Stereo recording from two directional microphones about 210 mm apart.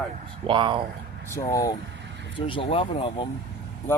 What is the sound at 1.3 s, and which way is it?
Speech, 15° left (ahead or behind).